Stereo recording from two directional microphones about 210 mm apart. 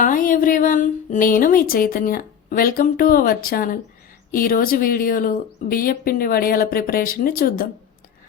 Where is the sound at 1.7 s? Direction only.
40° left (ahead or behind).